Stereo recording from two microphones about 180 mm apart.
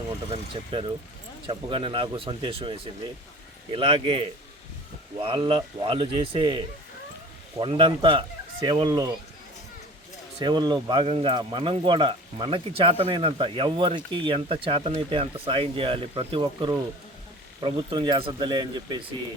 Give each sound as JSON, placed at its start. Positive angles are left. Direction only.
{"t": 0.3, "sound": "speech", "side_deg": -30}
{"t": 10.4, "sound": "speech", "side_deg": -25}